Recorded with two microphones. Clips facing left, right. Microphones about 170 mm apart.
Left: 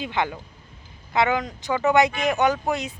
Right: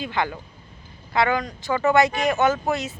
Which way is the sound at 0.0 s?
15° left (ahead or behind).